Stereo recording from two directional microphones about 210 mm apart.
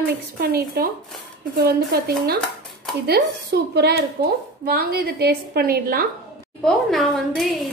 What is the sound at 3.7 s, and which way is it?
Speech, 50° right (ahead or behind).